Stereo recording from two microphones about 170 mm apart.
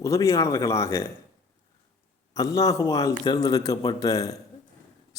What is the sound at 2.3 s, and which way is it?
Speech, 20° left (ahead or behind).